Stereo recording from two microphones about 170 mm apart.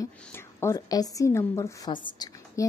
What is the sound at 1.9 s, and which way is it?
Speech, 30° left (ahead or behind).